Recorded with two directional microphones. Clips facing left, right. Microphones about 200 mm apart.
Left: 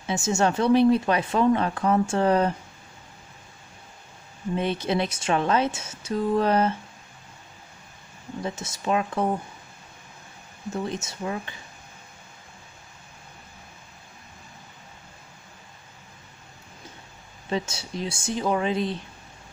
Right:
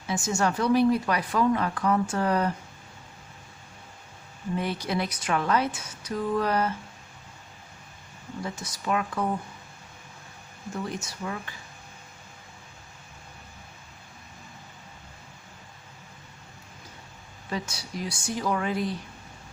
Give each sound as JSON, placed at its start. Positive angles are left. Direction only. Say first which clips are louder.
{"t": 0.0, "sound": "speech", "louder": "left 3 dB", "side_deg": 25}
{"t": 4.6, "sound": "speech", "louder": "left 4 dB", "side_deg": 25}
{"t": 8.4, "sound": "speech", "louder": "left 3 dB", "side_deg": 25}
{"t": 10.7, "sound": "speech", "louder": "left 3 dB", "side_deg": 25}
{"t": 17.5, "sound": "speech", "louder": "left 5 dB", "side_deg": 25}